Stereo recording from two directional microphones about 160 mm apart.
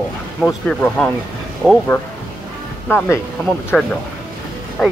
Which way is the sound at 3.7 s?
Centre (ahead or behind).